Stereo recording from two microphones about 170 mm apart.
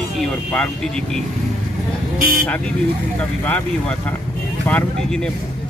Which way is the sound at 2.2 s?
55° right (ahead or behind).